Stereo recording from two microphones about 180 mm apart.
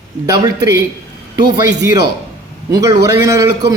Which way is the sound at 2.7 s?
20° right (ahead or behind).